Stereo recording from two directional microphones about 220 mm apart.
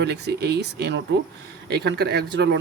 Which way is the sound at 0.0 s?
50° right (ahead or behind).